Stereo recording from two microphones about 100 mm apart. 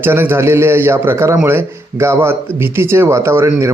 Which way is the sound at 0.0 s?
20° right (ahead or behind).